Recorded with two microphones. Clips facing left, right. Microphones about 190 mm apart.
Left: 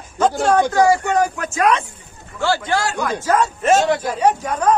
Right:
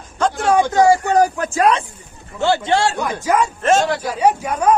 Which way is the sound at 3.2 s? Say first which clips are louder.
Even; 10° right (ahead or behind).